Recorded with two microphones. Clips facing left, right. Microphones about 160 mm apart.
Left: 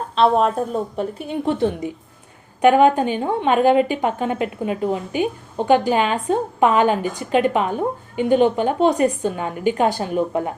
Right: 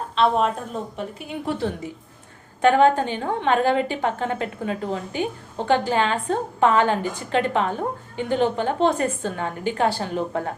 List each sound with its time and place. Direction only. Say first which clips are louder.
0.2 s speech: left 4 dB; 40° left (ahead or behind)
1.5 s a woman's voice: left 5 dB; 20° left (ahead or behind)